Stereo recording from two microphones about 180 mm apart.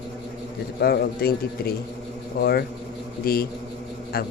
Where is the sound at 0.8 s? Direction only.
60° left (ahead or behind).